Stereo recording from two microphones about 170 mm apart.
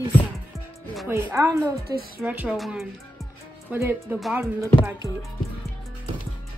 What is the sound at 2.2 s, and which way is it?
Speech, 10° right (ahead or behind).